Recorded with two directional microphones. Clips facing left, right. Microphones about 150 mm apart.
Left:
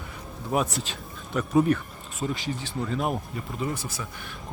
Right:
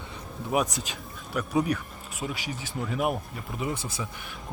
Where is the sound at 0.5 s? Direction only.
5° right (ahead or behind).